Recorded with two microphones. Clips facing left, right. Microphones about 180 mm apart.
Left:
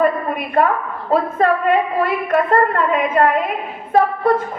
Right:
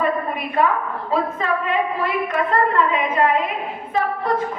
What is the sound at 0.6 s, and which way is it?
A woman's voice, 55° left (ahead or behind).